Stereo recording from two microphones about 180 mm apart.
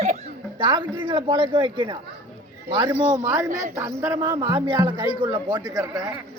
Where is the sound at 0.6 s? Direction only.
25° right (ahead or behind).